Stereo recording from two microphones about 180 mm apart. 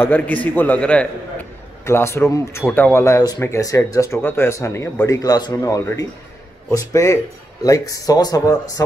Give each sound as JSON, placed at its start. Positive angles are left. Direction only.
{"t": 0.0, "sound": "a man's voice", "side_deg": 10}